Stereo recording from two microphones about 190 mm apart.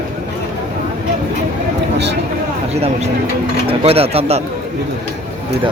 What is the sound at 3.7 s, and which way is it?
Speech, 30° right (ahead or behind).